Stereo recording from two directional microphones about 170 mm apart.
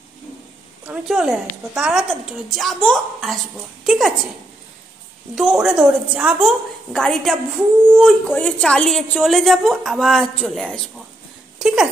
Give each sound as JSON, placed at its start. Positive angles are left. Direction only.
{"t": 0.8, "sound": "a woman's voice", "side_deg": -5}
{"t": 5.3, "sound": "a woman's voice", "side_deg": 0}